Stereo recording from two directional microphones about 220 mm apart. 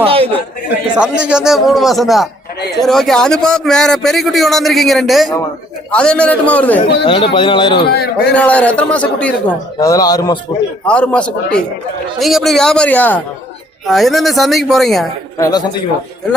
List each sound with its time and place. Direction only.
0.0 s a man's voice: 25° right (ahead or behind)
0.9 s a man's voice: 5° right (ahead or behind)
6.8 s speech: 20° left (ahead or behind)
7.9 s a man's voice: 45° left (ahead or behind)
8.3 s a man's voice: 5° left (ahead or behind)
9.8 s a man's voice: 15° left (ahead or behind)
10.8 s a man's voice: 5° left (ahead or behind)
15.4 s a man's voice: 15° left (ahead or behind)